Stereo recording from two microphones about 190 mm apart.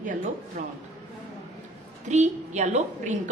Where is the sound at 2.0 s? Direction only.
40° right (ahead or behind).